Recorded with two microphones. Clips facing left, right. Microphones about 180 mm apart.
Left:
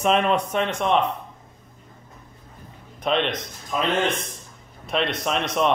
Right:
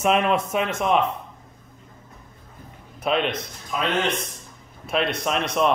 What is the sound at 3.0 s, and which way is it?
Speech, 5° right (ahead or behind).